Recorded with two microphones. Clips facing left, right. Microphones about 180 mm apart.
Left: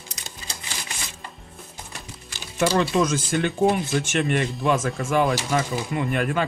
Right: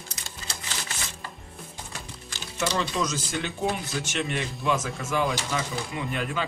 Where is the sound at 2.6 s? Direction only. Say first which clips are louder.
Left 7 dB; 55° left (ahead or behind).